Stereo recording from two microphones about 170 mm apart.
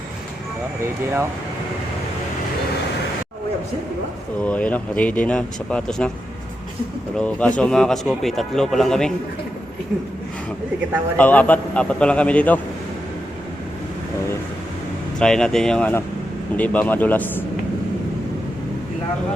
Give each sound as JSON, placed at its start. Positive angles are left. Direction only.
{"t": 4.4, "sound": "speech", "side_deg": 10}
{"t": 7.2, "sound": "a man's voice", "side_deg": 5}
{"t": 11.2, "sound": "speech", "side_deg": 10}
{"t": 15.2, "sound": "a man's voice", "side_deg": 5}